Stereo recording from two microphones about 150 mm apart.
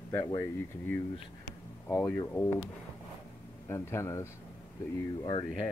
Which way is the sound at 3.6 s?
15° left (ahead or behind).